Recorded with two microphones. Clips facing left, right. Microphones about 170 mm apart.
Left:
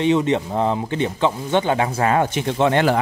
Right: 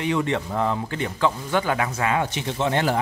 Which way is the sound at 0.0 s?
20° left (ahead or behind).